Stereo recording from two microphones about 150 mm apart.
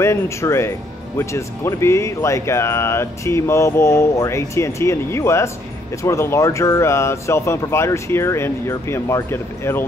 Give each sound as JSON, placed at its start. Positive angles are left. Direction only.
{"t": 0.0, "sound": "speech", "side_deg": 20}